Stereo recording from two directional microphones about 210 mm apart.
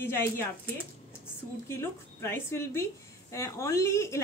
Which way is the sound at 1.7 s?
10° left (ahead or behind).